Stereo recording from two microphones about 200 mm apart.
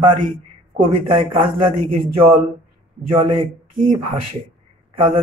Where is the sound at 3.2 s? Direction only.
25° right (ahead or behind).